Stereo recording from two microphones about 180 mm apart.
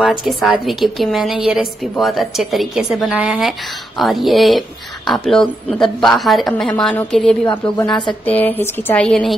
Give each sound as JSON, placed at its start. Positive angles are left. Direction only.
{"t": 0.0, "sound": "a woman's voice", "side_deg": 0}
{"t": 7.9, "sound": "speech", "side_deg": 25}
{"t": 8.3, "sound": "speech", "side_deg": 10}